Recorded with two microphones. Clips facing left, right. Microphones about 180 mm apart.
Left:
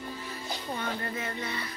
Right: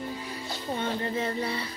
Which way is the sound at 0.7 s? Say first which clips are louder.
Right 6 dB; 25° right (ahead or behind).